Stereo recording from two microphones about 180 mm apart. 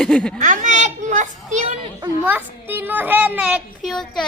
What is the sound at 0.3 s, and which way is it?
A child's voice, 45° right (ahead or behind).